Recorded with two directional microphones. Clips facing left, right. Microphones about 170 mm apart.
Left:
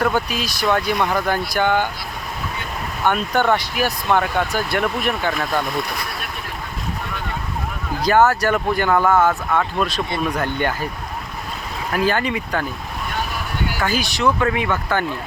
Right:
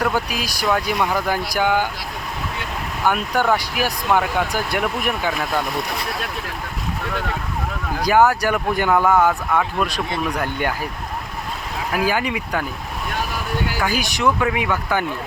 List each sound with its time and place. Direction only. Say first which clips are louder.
0.0 s speech: left 2 dB; 10° right (ahead or behind)
3.0 s speech: left 1 dB; 5° right (ahead or behind)
8.0 s speech: even; 10° right (ahead or behind)
11.9 s speech: left 1 dB; 10° right (ahead or behind)
13.7 s speech: even; 10° right (ahead or behind)